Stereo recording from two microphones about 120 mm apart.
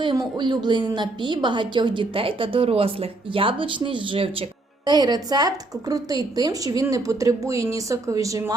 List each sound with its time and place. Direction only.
0.0 s a woman's voice: 40° right (ahead or behind)
4.9 s speech: 35° right (ahead or behind)